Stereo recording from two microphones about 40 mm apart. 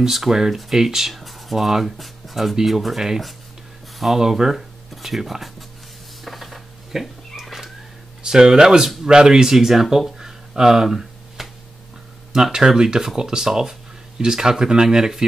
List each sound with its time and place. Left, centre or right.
0.0 s speech: centre
6.2 s cat: centre
7.4 s a sound: centre
8.2 s speech: centre
10.1 s a sound: centre
12.3 s speech: centre